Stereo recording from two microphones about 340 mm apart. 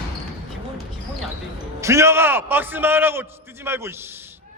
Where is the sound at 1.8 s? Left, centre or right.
Centre.